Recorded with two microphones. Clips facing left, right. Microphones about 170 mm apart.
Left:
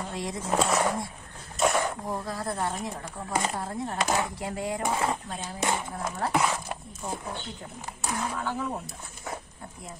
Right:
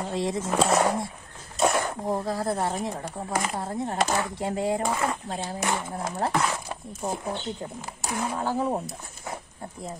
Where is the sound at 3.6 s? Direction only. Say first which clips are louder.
Right 4 dB; 30° right (ahead or behind).